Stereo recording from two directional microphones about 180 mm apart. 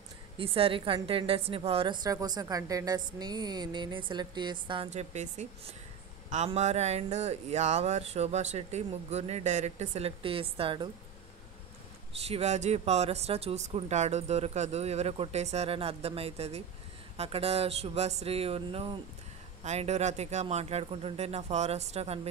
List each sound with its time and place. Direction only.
0.4 s speech: 30° right (ahead or behind)
2.0 s a woman's voice: 20° right (ahead or behind)
4.9 s speech: 40° right (ahead or behind)
12.2 s speech: 35° right (ahead or behind)